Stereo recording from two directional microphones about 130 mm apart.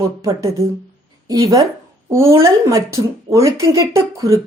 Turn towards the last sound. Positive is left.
turn(degrees=-25)  # may be behind; listen again after turning